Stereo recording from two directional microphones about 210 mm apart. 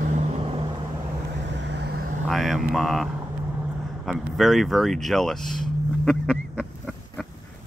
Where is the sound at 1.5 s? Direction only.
55° right (ahead or behind).